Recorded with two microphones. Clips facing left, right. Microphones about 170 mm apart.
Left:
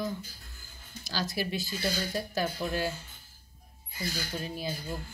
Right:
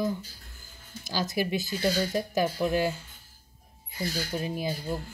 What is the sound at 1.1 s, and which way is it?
Speech, 15° right (ahead or behind).